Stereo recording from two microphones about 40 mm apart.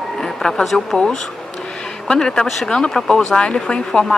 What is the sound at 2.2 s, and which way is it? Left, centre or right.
Speech, centre.